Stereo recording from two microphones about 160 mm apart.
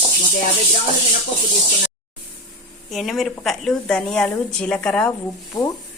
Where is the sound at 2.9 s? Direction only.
Centre (ahead or behind).